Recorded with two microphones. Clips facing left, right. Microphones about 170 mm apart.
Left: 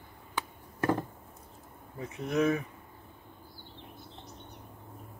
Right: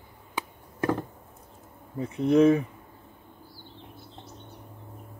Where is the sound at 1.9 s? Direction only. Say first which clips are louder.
Right 9 dB; 30° right (ahead or behind).